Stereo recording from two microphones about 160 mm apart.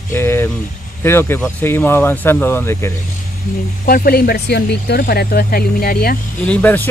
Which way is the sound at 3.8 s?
65° left (ahead or behind).